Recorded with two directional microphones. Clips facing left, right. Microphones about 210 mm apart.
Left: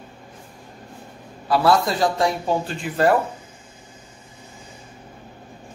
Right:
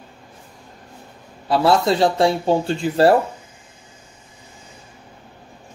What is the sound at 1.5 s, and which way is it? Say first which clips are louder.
Speech: right 2 dB; 25° right (ahead or behind).